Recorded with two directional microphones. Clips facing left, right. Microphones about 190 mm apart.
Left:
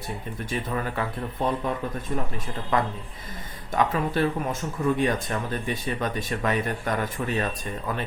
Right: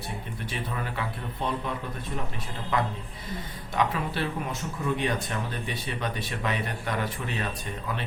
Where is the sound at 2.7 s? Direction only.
45° left (ahead or behind).